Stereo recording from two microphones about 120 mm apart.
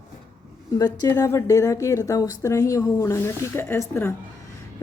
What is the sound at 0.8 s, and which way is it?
A woman's voice, 30° left (ahead or behind).